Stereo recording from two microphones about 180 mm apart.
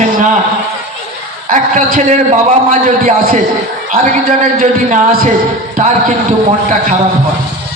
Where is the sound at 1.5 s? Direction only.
45° right (ahead or behind).